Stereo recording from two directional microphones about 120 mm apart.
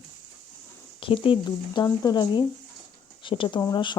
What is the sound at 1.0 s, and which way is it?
Speech, 45° left (ahead or behind).